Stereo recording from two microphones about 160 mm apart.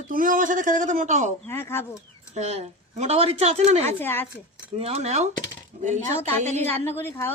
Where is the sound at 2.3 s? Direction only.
45° right (ahead or behind).